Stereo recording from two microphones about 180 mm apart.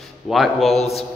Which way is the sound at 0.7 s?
35° left (ahead or behind).